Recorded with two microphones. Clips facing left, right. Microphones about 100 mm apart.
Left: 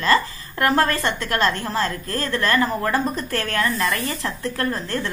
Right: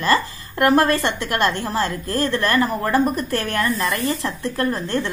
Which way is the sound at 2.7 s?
15° right (ahead or behind).